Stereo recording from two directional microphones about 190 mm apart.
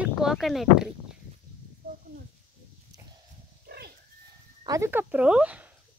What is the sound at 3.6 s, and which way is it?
Pig, 55° right (ahead or behind).